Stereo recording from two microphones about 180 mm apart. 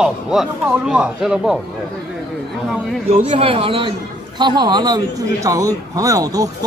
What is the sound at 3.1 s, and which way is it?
A man's voice, 35° right (ahead or behind).